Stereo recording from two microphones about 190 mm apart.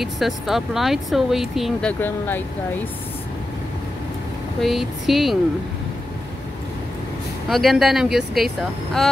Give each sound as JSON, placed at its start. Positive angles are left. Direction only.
{"t": 0.0, "sound": "speech", "side_deg": 0}
{"t": 4.6, "sound": "speech", "side_deg": 0}
{"t": 7.4, "sound": "speech", "side_deg": 0}